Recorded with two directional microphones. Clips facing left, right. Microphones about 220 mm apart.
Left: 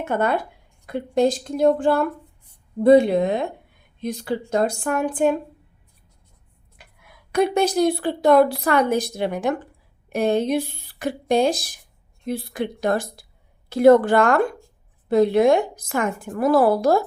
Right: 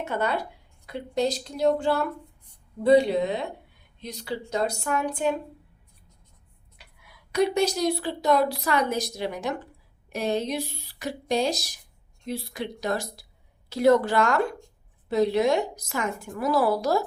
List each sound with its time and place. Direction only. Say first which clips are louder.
0.0 s a woman's voice: left 5 dB; 55° left (ahead or behind)
6.7 s a woman's voice: left 4 dB; 50° left (ahead or behind)